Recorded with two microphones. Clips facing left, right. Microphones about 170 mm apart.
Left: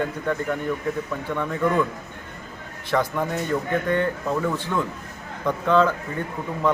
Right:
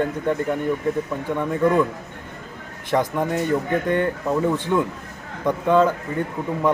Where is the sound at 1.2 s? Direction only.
15° right (ahead or behind).